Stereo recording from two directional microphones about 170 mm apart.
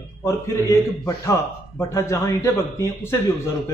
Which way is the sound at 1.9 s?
15° left (ahead or behind).